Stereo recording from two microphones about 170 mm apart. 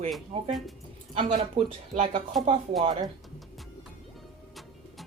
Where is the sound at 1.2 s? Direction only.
40° right (ahead or behind).